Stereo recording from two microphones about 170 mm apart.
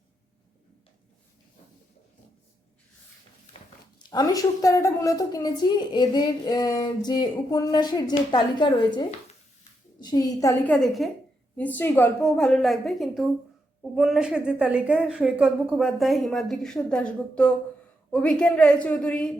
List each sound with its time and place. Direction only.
3.6 s a sound: 40° left (ahead or behind)
3.9 s a woman's voice: 25° left (ahead or behind)
10.8 s a woman's voice: centre (ahead or behind)